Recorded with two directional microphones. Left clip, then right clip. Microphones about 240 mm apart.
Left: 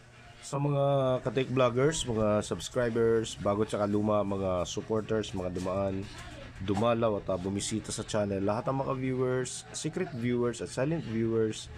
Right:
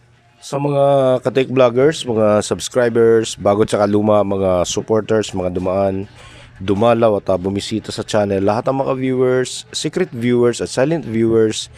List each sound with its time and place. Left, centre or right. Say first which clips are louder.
0.5 s speech: right 15 dB; right